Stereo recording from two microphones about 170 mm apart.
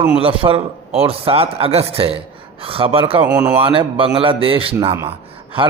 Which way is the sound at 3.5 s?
30° right (ahead or behind).